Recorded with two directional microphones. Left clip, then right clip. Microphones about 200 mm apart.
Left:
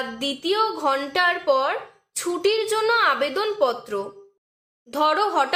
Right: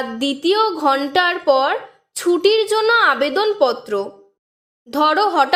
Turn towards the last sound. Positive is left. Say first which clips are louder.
# right 5 dB
turn(degrees=-40)  # may be behind; listen again after turning